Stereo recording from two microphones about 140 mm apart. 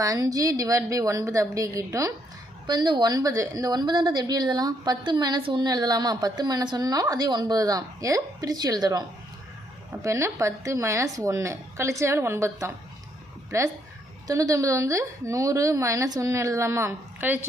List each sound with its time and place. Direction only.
0.0 s a woman's voice: 25° right (ahead or behind)